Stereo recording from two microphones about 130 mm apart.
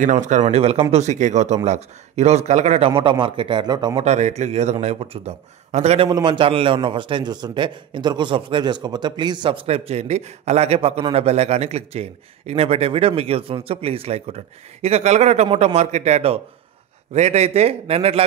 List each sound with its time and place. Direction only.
0.0 s speech: 65° right (ahead or behind)
0.9 s speech: 65° right (ahead or behind)
2.9 s a man's voice: 40° right (ahead or behind)
4.0 s speech: 60° right (ahead or behind)
6.0 s a man's voice: 35° right (ahead or behind); by 18.2 s 50° right (ahead or behind)